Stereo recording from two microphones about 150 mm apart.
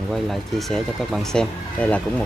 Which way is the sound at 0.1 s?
Centre (ahead or behind).